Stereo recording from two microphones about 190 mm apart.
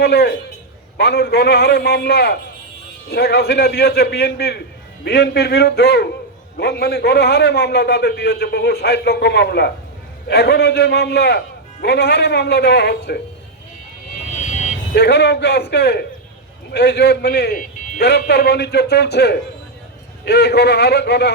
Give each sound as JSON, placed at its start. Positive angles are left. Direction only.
{"t": 0.0, "sound": "a man's voice", "side_deg": 60}
{"t": 14.9, "sound": "a man's voice", "side_deg": 60}